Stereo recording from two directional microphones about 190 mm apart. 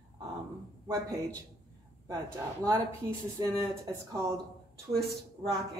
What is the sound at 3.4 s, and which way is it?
Speech, 20° right (ahead or behind).